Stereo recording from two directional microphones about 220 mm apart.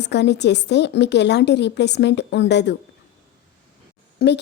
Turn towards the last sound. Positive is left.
turn(degrees=45)  # may be behind; listen again after turning